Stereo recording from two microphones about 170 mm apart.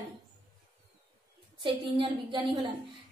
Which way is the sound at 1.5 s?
30° right (ahead or behind).